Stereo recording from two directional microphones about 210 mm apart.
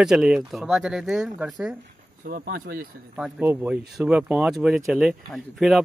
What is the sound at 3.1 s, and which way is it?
Speech, 10° right (ahead or behind).